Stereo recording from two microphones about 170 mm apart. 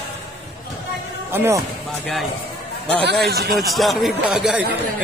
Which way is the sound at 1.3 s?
15° right (ahead or behind).